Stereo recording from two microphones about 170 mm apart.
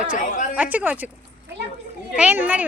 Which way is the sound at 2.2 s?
10° right (ahead or behind).